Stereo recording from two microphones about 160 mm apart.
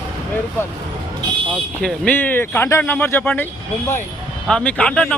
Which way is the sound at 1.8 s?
10° left (ahead or behind).